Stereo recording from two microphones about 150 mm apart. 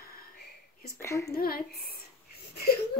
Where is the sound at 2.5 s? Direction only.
90° left.